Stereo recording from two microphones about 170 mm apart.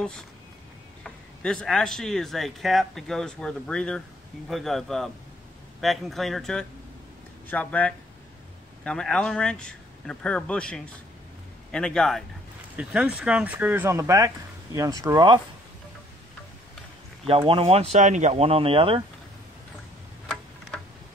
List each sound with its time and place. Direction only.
1.0 s speech: 5° left (ahead or behind); by 15.4 s 25° right (ahead or behind)
17.3 s speech: 30° right (ahead or behind)
17.9 s speech: 45° right (ahead or behind)